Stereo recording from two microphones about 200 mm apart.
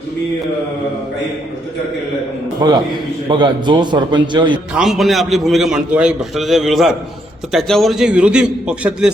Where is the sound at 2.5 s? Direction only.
20° right (ahead or behind).